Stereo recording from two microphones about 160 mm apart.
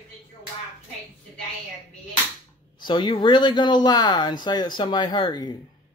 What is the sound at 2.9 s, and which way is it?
Speech, 30° left (ahead or behind).